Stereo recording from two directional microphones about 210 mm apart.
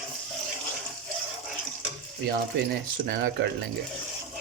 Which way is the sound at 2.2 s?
55° right (ahead or behind).